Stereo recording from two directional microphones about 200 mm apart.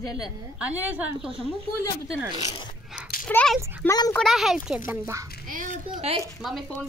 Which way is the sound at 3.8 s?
20° left (ahead or behind).